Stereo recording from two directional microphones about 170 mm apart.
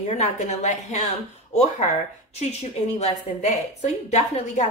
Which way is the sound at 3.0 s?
40° left (ahead or behind).